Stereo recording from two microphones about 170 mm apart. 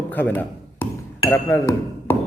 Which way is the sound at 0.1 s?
10° left (ahead or behind).